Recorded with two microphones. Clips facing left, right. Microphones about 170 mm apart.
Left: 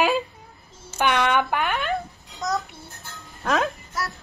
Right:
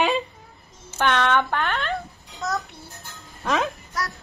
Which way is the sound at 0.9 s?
10° left (ahead or behind).